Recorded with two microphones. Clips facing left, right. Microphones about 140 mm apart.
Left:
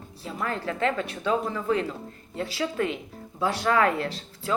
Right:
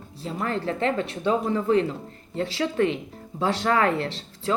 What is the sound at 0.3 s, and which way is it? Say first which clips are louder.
Speech: right 3 dB; 30° right (ahead or behind).